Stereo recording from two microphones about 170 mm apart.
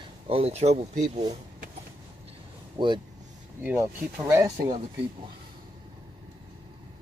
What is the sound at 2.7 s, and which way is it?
Speech, 25° right (ahead or behind).